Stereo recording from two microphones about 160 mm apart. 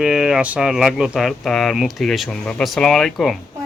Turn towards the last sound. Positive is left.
turn(degrees=5)  # may be behind; listen again after turning